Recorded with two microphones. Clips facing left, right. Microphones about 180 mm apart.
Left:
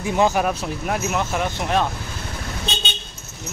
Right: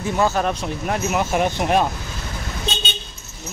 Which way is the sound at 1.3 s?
15° right (ahead or behind).